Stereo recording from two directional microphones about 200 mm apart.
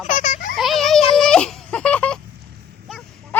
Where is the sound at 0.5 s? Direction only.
Centre (ahead or behind).